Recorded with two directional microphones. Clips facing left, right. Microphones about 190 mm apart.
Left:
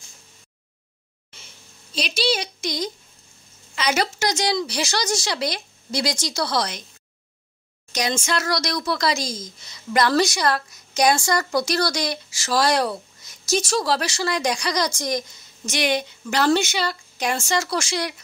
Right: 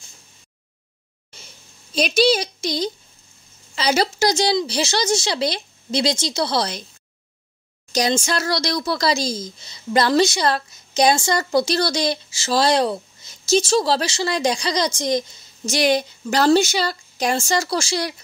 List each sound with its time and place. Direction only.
2.0 s a woman's voice: 50° right (ahead or behind); by 6.8 s 30° right (ahead or behind)
7.9 s speech: 35° right (ahead or behind)